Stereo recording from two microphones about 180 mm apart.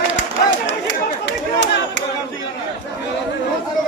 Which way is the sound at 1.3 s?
80° left.